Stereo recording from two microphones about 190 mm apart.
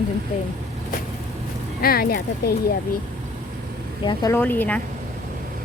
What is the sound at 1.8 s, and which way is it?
Speech, 50° left (ahead or behind).